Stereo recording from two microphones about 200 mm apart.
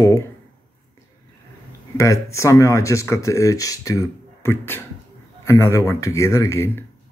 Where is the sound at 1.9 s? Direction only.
15° left (ahead or behind).